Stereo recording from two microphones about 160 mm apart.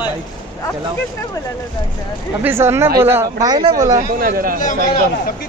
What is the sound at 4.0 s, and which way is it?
Speech, 65° right (ahead or behind).